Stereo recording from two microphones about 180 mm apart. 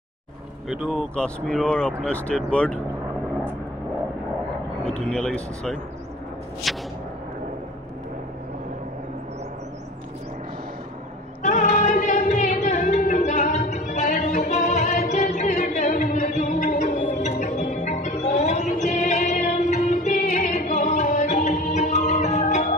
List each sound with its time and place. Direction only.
0.7 s speech: centre (ahead or behind)
5.0 s speech: 5° left (ahead or behind)
11.4 s a sound: 40° left (ahead or behind)
17.1 s music: 45° left (ahead or behind)